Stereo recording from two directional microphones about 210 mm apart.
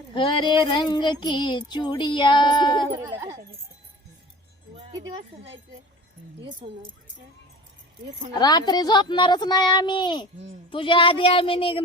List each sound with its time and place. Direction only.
0.1 s child singing: 20° left (ahead or behind)
3.2 s speech: 15° right (ahead or behind)
4.8 s speech: 25° right (ahead or behind)
6.6 s speech: 25° right (ahead or behind)
8.4 s child singing: 20° left (ahead or behind)